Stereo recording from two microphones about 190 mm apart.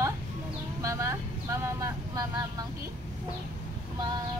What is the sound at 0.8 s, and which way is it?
Speech, 15° right (ahead or behind).